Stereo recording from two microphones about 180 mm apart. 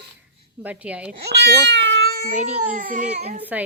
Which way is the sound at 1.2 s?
65° right (ahead or behind).